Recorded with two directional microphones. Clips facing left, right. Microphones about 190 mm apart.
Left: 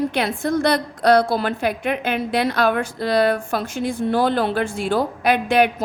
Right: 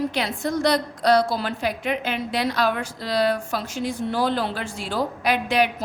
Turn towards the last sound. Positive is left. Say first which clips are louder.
# left 4 dB
turn(degrees=55)  # may be behind; listen again after turning